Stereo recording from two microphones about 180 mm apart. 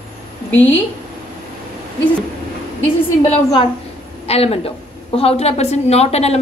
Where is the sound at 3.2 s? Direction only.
30° left (ahead or behind).